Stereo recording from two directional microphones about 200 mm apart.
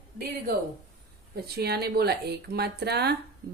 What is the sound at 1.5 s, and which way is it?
Speech, 55° right (ahead or behind).